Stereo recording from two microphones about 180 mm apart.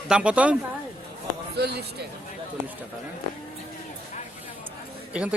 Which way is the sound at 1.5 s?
65° right (ahead or behind).